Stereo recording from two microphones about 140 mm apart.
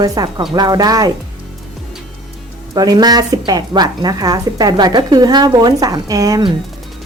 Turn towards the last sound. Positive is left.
turn(degrees=-25)  # may be behind; listen again after turning